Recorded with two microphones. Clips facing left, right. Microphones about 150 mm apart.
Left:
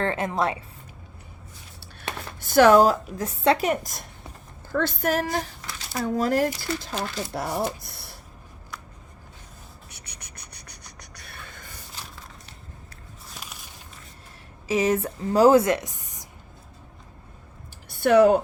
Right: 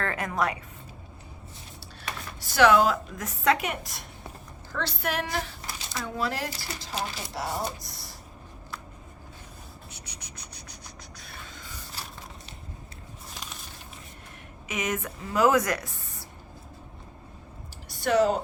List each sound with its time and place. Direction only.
0.0 s a woman's voice: 25° left (ahead or behind)
2.4 s speech: 50° left (ahead or behind)
4.7 s speech: 50° left (ahead or behind)
9.9 s a sound: 55° left (ahead or behind)
14.7 s speech: 30° left (ahead or behind); by 16.2 s 15° left (ahead or behind)
17.8 s a sound: 55° left (ahead or behind)